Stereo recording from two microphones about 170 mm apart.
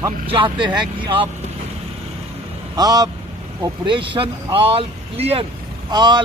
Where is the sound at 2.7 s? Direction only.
25° right (ahead or behind).